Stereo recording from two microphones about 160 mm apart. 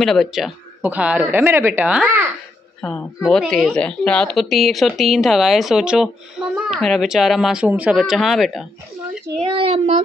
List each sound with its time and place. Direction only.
0.0 s speech: centre (ahead or behind)
2.8 s a woman's voice: 5° left (ahead or behind)
6.4 s a sound: 5° right (ahead or behind)
6.7 s a woman's voice: centre (ahead or behind)
9.5 s child singing: 35° right (ahead or behind)